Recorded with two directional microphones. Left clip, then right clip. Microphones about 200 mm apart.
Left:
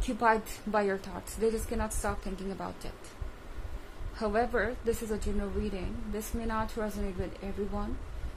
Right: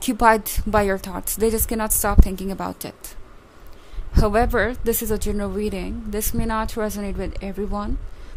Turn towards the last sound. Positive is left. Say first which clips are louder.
# right 9 dB
turn(degrees=-50)  # may be behind; listen again after turning